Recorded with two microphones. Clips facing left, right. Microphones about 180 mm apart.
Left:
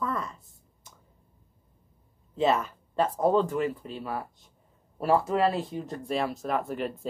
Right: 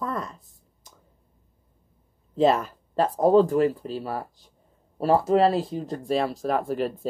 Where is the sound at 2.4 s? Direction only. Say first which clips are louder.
Right 4 dB; 35° right (ahead or behind).